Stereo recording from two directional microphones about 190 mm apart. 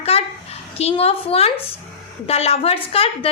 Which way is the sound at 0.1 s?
30° left (ahead or behind).